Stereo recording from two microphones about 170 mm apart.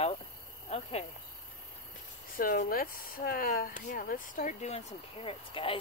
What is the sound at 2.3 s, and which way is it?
Speech, 55° left (ahead or behind).